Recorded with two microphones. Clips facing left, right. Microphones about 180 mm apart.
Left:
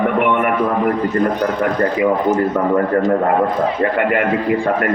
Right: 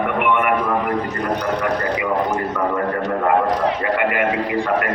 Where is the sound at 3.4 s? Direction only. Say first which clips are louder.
Left 1 dB; 70° right (ahead or behind).